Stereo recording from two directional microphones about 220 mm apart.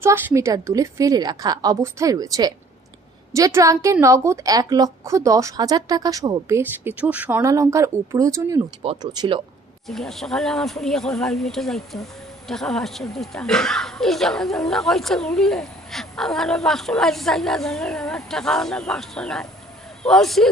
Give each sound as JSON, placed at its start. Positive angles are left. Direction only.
{"t": 0.0, "sound": "a woman's voice", "side_deg": -10}
{"t": 9.8, "sound": "speech", "side_deg": 0}